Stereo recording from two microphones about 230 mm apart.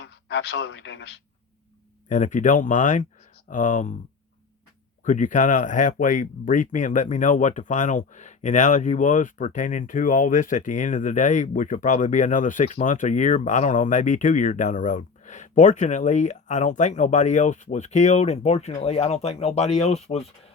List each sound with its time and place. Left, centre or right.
0.0 s a man's voice: left
2.0 s speech: left
5.0 s speech: left